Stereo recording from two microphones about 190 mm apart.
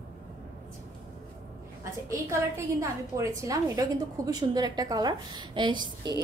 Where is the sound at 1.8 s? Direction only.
15° right (ahead or behind).